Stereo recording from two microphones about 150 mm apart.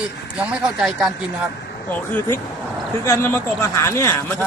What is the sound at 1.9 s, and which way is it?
A man's voice, 10° left (ahead or behind).